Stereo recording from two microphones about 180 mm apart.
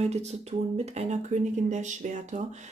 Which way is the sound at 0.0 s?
35° right (ahead or behind).